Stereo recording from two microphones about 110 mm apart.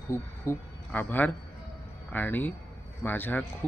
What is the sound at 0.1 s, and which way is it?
A man's voice, 20° left (ahead or behind).